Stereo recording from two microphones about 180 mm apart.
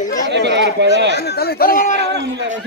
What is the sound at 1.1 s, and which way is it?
Speech, 60° left (ahead or behind).